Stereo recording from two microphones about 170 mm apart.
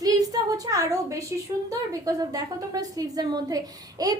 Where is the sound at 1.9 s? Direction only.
20° right (ahead or behind).